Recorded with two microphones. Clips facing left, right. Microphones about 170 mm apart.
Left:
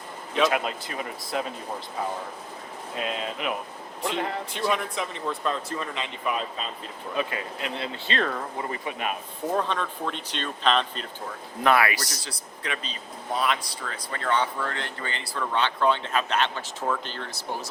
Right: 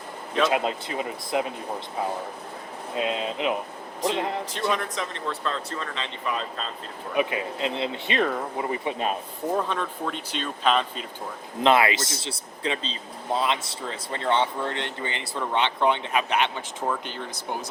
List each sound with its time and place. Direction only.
0.5 s speech: 25° right (ahead or behind)
2.9 s speech: 20° right (ahead or behind)
4.5 s speech: 5° left (ahead or behind)
7.2 s speech: 20° right (ahead or behind)
9.6 s speech: 5° right (ahead or behind)
11.6 s speech: 20° right (ahead or behind)